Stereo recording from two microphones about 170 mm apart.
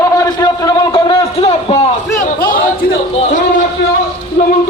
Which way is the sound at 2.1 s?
55° left (ahead or behind).